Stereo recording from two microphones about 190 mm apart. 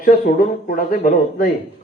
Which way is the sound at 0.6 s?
45° left (ahead or behind).